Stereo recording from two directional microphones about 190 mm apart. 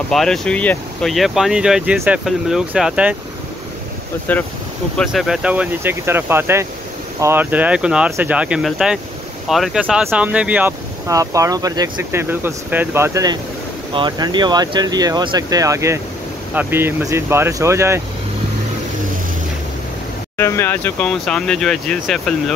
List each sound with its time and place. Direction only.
0.1 s speech: centre (ahead or behind)
4.3 s speech: 10° left (ahead or behind); by 18.0 s 15° right (ahead or behind)
20.3 s speech: 15° left (ahead or behind)